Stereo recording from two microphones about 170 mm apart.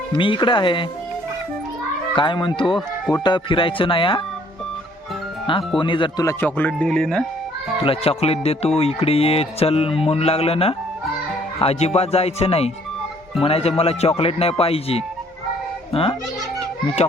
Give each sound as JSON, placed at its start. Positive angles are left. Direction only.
{"t": 0.1, "sound": "speech", "side_deg": 30}
{"t": 2.1, "sound": "speech", "side_deg": 30}
{"t": 5.5, "sound": "speech", "side_deg": 30}
{"t": 6.2, "sound": "speech", "side_deg": 10}
{"t": 7.9, "sound": "a child's voice", "side_deg": 35}